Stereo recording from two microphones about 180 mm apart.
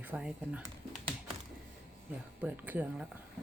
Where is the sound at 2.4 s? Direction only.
10° right (ahead or behind).